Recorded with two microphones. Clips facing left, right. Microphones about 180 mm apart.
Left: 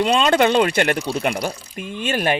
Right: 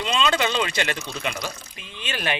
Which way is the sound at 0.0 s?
55° left (ahead or behind).